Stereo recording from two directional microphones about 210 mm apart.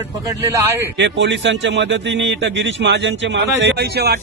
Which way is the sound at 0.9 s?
55° right (ahead or behind).